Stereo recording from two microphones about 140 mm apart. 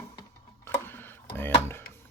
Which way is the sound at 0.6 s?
15° left (ahead or behind).